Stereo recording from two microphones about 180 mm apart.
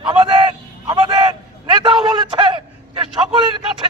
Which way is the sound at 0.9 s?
25° right (ahead or behind).